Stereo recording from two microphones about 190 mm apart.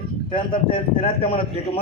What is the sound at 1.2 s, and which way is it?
Speech, 30° left (ahead or behind).